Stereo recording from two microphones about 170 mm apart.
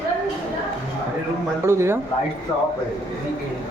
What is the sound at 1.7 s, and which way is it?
Speech, 15° right (ahead or behind).